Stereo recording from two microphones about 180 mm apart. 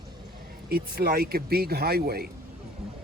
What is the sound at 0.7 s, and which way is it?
Speech, 55° right (ahead or behind).